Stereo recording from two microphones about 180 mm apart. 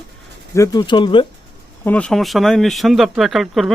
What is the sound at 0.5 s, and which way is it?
Speech, 15° left (ahead or behind).